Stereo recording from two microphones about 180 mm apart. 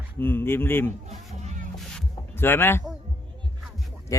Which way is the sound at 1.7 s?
Centre (ahead or behind).